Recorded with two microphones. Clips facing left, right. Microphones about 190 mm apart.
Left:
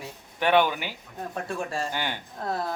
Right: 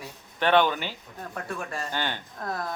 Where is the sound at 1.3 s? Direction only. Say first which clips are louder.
Left 3 dB; 25° left (ahead or behind).